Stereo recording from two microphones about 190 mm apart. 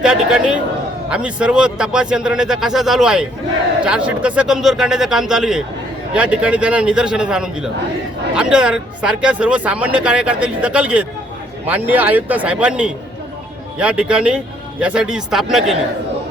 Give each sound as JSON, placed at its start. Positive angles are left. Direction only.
{"t": 0.0, "sound": "a man's voice", "side_deg": -5}